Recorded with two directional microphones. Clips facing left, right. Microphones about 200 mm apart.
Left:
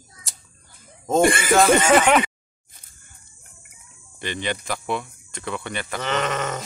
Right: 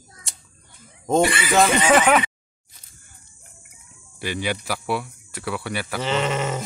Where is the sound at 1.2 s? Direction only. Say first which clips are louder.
Left 5 dB; 50° left (ahead or behind).